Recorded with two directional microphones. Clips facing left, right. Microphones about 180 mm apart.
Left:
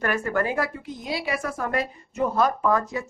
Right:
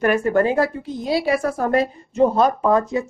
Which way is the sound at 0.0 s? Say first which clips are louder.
Right 8 dB; 20° right (ahead or behind).